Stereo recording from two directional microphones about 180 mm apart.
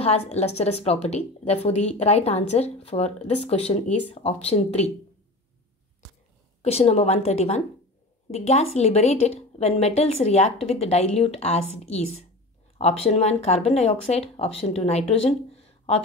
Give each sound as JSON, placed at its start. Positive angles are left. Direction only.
{"t": 0.0, "sound": "a woman's voice", "side_deg": 35}
{"t": 6.6, "sound": "a woman's voice", "side_deg": 35}